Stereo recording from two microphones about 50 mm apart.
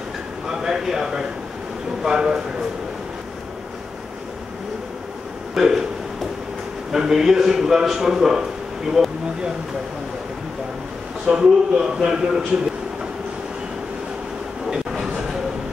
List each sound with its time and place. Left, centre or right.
0.5 s a sound: centre
2.0 s a man's voice: centre
5.5 s speech: centre
6.9 s a man's voice: centre
11.2 s a man's voice: centre
14.7 s a sound: centre